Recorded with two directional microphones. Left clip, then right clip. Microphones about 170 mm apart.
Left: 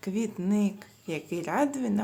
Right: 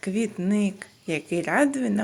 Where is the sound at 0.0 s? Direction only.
15° right (ahead or behind).